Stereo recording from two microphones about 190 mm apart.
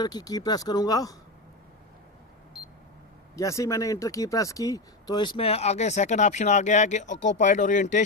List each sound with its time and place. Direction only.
0.0 s speech: 20° left (ahead or behind)
3.3 s speech: 15° left (ahead or behind); by 8.0 s 40° left (ahead or behind)